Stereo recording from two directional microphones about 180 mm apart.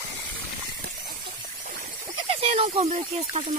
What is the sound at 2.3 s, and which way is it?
Speech, 35° right (ahead or behind).